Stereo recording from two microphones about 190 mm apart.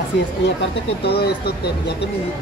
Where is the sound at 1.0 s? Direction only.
55° left (ahead or behind).